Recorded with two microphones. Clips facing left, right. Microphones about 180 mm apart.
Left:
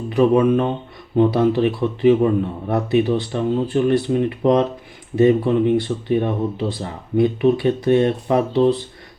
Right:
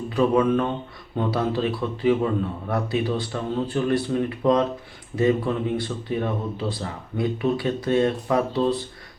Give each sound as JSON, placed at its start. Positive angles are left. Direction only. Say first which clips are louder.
{"t": 0.1, "sound": "speech", "louder": "left 5 dB", "side_deg": 20}